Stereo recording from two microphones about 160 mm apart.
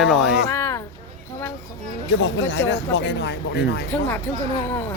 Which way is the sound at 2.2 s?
90° left.